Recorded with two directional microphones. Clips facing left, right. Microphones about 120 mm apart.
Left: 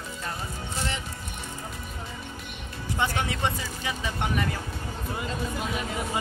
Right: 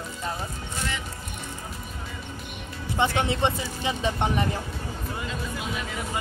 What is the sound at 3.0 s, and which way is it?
Speech, 25° right (ahead or behind).